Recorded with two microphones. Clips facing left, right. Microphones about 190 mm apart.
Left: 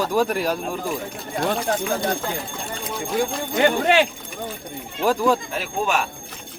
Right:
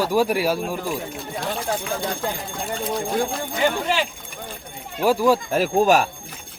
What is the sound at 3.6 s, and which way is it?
Speech, 60° left (ahead or behind).